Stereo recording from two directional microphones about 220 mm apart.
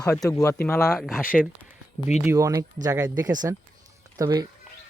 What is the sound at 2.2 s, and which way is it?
Speech, 10° right (ahead or behind).